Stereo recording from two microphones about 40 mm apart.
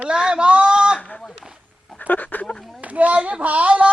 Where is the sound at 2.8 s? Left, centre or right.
Right.